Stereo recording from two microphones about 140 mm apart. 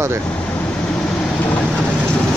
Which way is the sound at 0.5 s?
5° left (ahead or behind).